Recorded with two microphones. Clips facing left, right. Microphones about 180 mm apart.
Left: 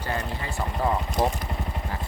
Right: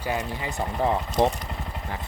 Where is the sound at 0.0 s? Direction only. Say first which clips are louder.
Right 2 dB; 10° right (ahead or behind).